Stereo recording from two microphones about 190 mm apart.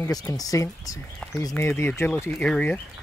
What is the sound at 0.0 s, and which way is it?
Speech, 20° left (ahead or behind).